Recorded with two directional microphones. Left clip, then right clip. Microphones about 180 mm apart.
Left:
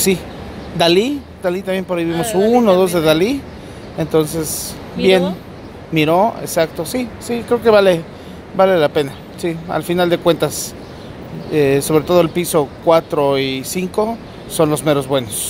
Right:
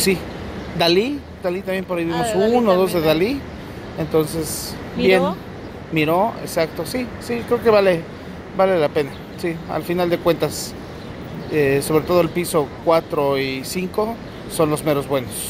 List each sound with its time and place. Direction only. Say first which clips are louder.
0.7 s speech: left 4 dB; 25° left (ahead or behind)
2.1 s speech: left 3 dB; 10° left (ahead or behind)
2.6 s speech: left 4 dB; 25° left (ahead or behind)
5.0 s speech: left 3 dB; 5° left (ahead or behind)
5.9 s speech: left 4 dB; 25° left (ahead or behind)
11.5 s speech: left 4 dB; 25° left (ahead or behind)